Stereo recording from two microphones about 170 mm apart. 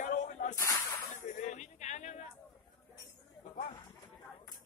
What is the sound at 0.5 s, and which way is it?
Snake, 20° left (ahead or behind).